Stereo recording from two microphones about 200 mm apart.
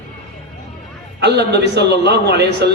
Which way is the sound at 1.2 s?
55° right (ahead or behind).